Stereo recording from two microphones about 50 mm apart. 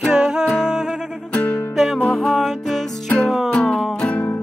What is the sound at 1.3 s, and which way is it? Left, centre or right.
Music, left.